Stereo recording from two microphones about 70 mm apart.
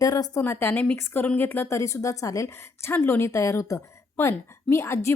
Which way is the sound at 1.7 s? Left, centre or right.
Left.